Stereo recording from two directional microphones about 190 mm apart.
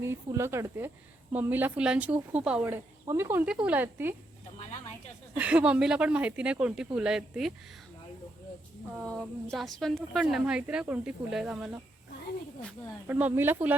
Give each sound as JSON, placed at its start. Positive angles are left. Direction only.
{"t": 0.0, "sound": "speech", "side_deg": -15}
{"t": 5.4, "sound": "a woman's voice", "side_deg": -5}
{"t": 9.0, "sound": "a woman's voice", "side_deg": 5}
{"t": 13.1, "sound": "speech", "side_deg": -10}